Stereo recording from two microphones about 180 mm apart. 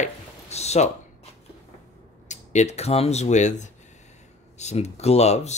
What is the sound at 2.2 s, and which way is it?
Speech, 40° left (ahead or behind).